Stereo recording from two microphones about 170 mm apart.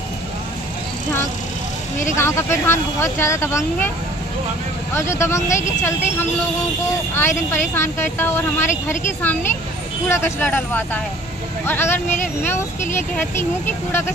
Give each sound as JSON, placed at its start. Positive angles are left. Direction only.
{"t": 2.1, "sound": "a woman's voice", "side_deg": 15}
{"t": 4.9, "sound": "a woman's voice", "side_deg": 15}